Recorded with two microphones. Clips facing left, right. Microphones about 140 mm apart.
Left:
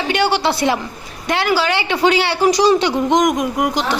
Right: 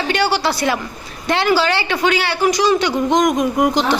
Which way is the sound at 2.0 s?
25° left (ahead or behind).